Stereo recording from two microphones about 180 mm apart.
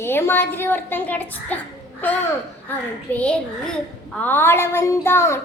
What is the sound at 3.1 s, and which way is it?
A child's voice, 5° left (ahead or behind).